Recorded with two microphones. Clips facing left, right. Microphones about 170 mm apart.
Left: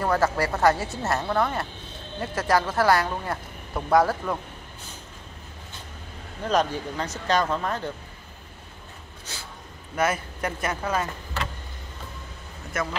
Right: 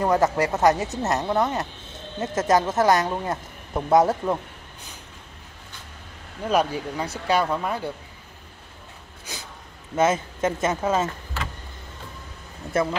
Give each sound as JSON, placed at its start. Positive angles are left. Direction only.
{"t": 0.0, "sound": "speech", "side_deg": -20}
{"t": 6.4, "sound": "speech", "side_deg": -10}
{"t": 9.2, "sound": "a sound", "side_deg": -15}
{"t": 9.9, "sound": "speech", "side_deg": -25}
{"t": 12.7, "sound": "speech", "side_deg": -30}